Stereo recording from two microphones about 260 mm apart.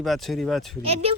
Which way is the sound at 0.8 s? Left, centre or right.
Right.